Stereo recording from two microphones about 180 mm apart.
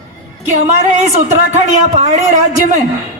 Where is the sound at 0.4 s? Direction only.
40° right (ahead or behind).